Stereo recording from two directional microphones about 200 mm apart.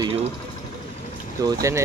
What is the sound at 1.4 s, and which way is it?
Speech, 15° right (ahead or behind).